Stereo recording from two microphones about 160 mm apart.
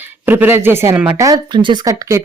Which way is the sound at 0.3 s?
15° right (ahead or behind).